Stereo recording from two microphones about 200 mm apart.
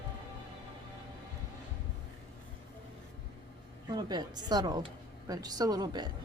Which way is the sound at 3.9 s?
20° right (ahead or behind).